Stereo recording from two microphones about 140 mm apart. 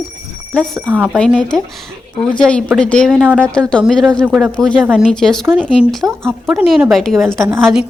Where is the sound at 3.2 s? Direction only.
10° right (ahead or behind).